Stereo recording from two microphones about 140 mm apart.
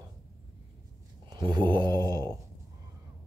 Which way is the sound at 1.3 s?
30° right (ahead or behind).